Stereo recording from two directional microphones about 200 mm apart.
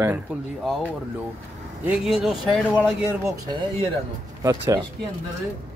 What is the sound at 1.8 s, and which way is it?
Speech, 5° right (ahead or behind).